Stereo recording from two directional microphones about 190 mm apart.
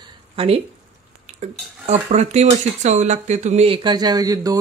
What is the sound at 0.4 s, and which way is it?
Speech, 30° right (ahead or behind).